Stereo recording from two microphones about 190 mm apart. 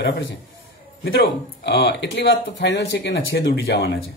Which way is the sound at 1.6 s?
60° left (ahead or behind).